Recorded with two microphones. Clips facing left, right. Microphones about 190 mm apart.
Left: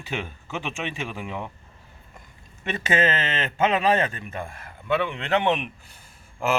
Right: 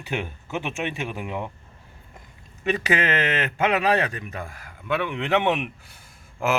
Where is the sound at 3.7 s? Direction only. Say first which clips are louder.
Right 1 dB; 10° right (ahead or behind).